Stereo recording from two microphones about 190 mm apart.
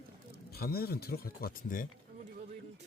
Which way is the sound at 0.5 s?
55° left (ahead or behind).